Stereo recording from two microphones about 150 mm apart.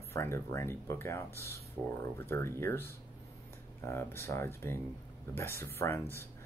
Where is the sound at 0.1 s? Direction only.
20° left (ahead or behind).